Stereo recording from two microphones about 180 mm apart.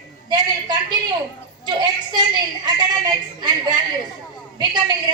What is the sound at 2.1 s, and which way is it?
A woman's voice, 25° right (ahead or behind).